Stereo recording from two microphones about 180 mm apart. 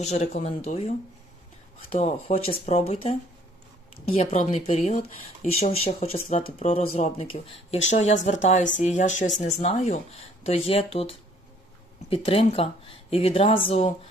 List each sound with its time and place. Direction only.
0.0 s speech: 40° left (ahead or behind)
6.2 s speech: 45° left (ahead or behind)